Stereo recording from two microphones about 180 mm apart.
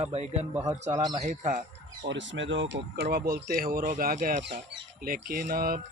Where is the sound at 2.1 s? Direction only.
90° right; by 5.8 s 55° right (ahead or behind).